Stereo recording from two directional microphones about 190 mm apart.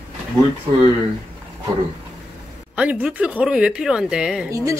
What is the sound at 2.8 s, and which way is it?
Speech, 5° right (ahead or behind).